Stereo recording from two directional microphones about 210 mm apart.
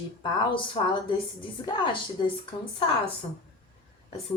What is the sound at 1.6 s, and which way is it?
Speech, 25° left (ahead or behind).